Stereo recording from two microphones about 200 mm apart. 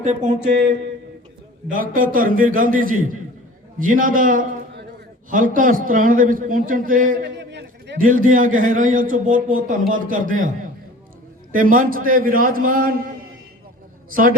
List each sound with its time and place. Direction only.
0.0 s speech: 35° right (ahead or behind)
1.7 s a man's voice: 45° right (ahead or behind)
7.3 s a sound: 60° right (ahead or behind)
8.0 s a man's voice: 45° right (ahead or behind)
11.5 s a man's voice: 45° right (ahead or behind)
14.1 s a man's voice: 45° right (ahead or behind)